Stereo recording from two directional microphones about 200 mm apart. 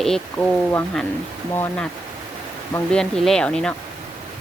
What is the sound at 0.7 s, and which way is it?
Speech, 10° left (ahead or behind).